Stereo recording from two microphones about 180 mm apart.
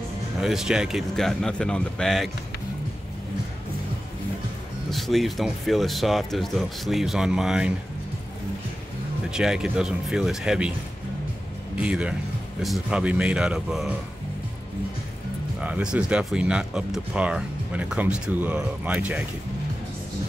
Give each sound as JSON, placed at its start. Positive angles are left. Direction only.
{"t": 0.4, "sound": "speech", "side_deg": 0}
{"t": 4.9, "sound": "speech", "side_deg": 0}
{"t": 9.3, "sound": "speech", "side_deg": -5}
{"t": 11.8, "sound": "speech", "side_deg": -5}
{"t": 15.6, "sound": "speech", "side_deg": -5}